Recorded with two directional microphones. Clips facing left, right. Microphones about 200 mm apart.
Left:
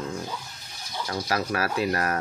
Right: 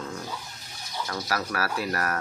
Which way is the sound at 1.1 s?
20° left (ahead or behind).